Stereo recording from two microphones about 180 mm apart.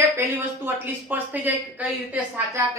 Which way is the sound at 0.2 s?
10° right (ahead or behind).